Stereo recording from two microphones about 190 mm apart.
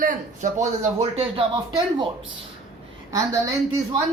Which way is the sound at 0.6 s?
35° right (ahead or behind).